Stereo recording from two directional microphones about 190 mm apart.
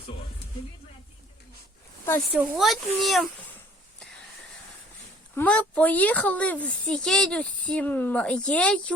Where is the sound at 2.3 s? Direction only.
Centre (ahead or behind).